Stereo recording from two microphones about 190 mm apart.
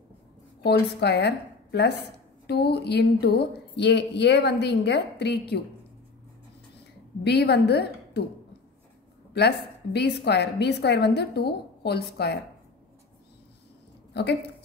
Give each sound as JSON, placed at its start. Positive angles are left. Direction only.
{"t": 0.7, "sound": "a woman's voice", "side_deg": 60}
{"t": 7.2, "sound": "a woman's voice", "side_deg": 60}
{"t": 9.3, "sound": "a woman's voice", "side_deg": 60}
{"t": 14.1, "sound": "a woman's voice", "side_deg": 60}